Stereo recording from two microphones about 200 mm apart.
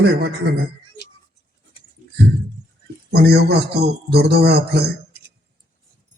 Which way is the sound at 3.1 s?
55° right (ahead or behind).